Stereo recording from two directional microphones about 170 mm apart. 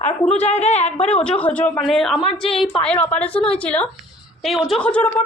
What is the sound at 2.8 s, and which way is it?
A woman's voice, 5° left (ahead or behind).